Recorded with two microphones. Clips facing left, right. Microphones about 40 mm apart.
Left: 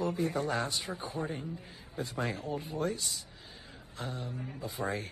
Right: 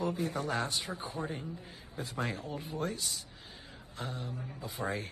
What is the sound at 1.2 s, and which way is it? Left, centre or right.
Speech, left.